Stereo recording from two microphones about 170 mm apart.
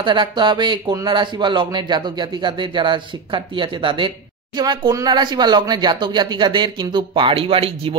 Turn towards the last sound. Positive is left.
turn(degrees=-35)  # may be behind; listen again after turning